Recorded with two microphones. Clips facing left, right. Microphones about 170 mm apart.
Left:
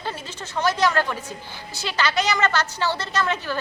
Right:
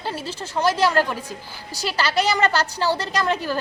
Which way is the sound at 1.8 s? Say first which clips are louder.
Right 2 dB; 35° right (ahead or behind).